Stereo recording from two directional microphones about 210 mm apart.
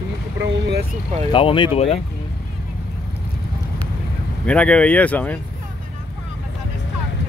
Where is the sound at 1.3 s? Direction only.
25° left (ahead or behind).